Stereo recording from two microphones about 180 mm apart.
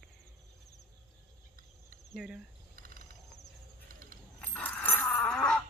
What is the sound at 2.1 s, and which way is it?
Cricket, 5° right (ahead or behind).